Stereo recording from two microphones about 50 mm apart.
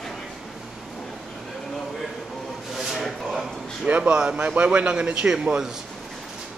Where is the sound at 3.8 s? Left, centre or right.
Right; by 5.7 s centre.